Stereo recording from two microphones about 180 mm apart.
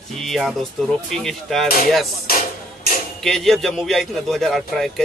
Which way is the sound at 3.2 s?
Centre (ahead or behind).